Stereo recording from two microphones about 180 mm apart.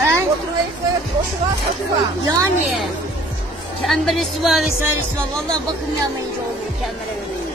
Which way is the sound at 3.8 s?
Centre (ahead or behind).